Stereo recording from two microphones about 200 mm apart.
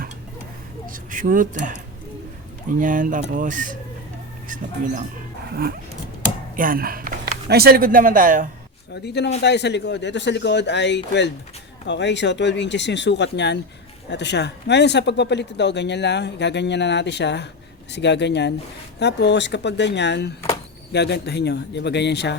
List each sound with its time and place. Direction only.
0.9 s speech: 40° right (ahead or behind)
6.6 s speech: 45° right (ahead or behind)
9.0 s speech: 55° left (ahead or behind)